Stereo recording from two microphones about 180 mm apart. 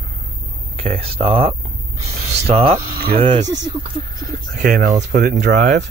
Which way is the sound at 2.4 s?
30° right (ahead or behind).